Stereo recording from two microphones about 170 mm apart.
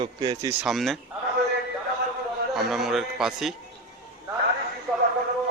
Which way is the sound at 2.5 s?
Centre (ahead or behind).